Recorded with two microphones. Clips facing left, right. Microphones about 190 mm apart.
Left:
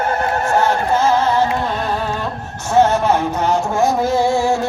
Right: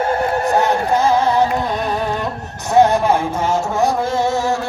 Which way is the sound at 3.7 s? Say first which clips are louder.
Left 2 dB; centre (ahead or behind).